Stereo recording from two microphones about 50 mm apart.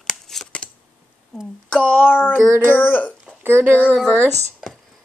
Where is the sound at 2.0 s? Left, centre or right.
Left.